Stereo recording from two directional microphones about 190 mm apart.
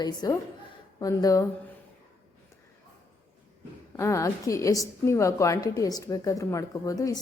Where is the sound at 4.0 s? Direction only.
15° left (ahead or behind).